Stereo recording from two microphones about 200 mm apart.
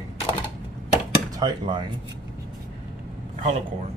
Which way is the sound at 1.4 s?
20° right (ahead or behind).